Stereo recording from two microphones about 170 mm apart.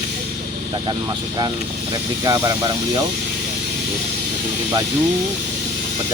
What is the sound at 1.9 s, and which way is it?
Speech, 20° right (ahead or behind).